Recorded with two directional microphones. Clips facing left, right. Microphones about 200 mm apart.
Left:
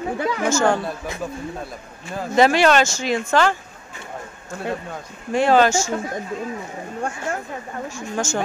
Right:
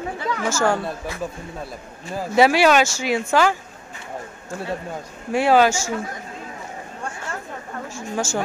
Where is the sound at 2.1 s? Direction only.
10° right (ahead or behind).